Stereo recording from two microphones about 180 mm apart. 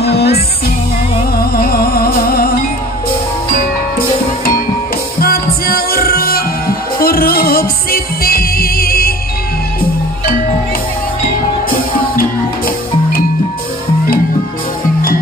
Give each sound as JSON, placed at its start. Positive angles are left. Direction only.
{"t": 0.0, "sound": "music", "side_deg": 65}
{"t": 1.4, "sound": "music", "side_deg": 55}
{"t": 5.2, "sound": "music", "side_deg": 55}
{"t": 12.2, "sound": "music", "side_deg": 55}